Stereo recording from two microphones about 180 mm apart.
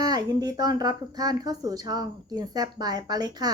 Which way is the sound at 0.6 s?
20° right (ahead or behind).